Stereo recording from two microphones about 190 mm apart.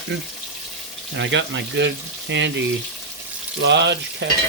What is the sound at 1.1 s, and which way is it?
Speech, 70° right (ahead or behind).